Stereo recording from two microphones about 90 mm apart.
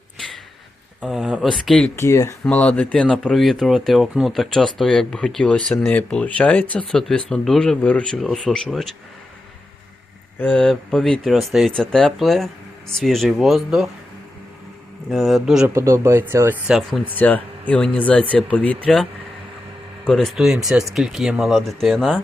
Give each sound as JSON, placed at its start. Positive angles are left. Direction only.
{"t": 1.0, "sound": "speech", "side_deg": -10}
{"t": 2.0, "sound": "speech", "side_deg": 30}
{"t": 2.4, "sound": "speech", "side_deg": 15}
{"t": 7.8, "sound": "speech", "side_deg": 15}
{"t": 8.2, "sound": "speech", "side_deg": 5}
{"t": 10.5, "sound": "speech", "side_deg": 10}
{"t": 15.1, "sound": "speech", "side_deg": 0}
{"t": 15.7, "sound": "speech", "side_deg": -35}
{"t": 16.6, "sound": "speech", "side_deg": -5}
{"t": 17.2, "sound": "speech", "side_deg": 15}
{"t": 20.1, "sound": "speech", "side_deg": 5}